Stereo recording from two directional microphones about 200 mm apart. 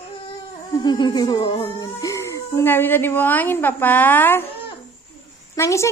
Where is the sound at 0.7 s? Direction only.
20° left (ahead or behind).